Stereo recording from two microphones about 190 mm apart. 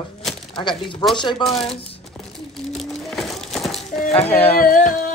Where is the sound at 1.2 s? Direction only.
25° left (ahead or behind).